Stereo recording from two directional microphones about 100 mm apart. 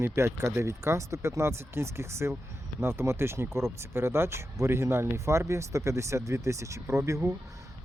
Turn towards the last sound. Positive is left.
turn(degrees=-30)  # may be behind; listen again after turning